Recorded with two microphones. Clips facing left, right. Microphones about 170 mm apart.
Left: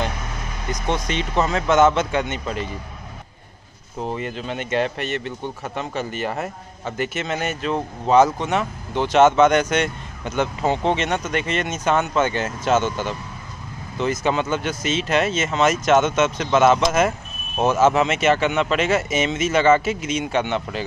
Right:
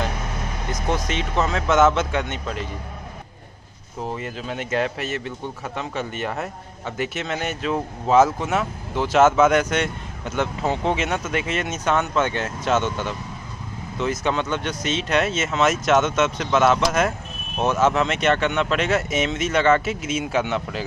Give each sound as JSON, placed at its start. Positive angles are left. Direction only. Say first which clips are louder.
{"t": 0.8, "sound": "speech", "louder": "left 1 dB", "side_deg": 0}
{"t": 4.0, "sound": "speech", "louder": "left 2 dB", "side_deg": 0}